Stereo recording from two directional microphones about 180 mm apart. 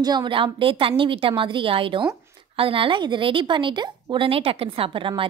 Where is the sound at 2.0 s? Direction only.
15° right (ahead or behind).